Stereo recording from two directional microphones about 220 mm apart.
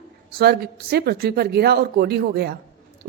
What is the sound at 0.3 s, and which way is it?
A woman's voice, 45° right (ahead or behind).